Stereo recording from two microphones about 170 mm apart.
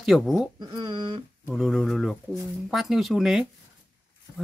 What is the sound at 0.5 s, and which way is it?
Speech, 25° right (ahead or behind).